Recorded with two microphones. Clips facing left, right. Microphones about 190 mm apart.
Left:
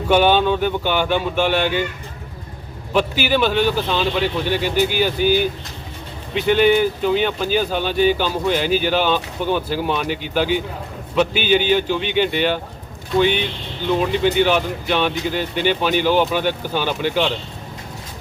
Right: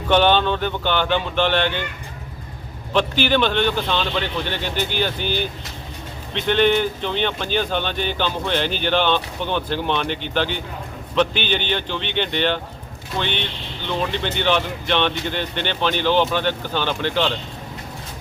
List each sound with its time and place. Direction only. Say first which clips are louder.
0.1 s speech: left 2 dB; 10° left (ahead or behind)
2.9 s speech: even; 10° left (ahead or behind)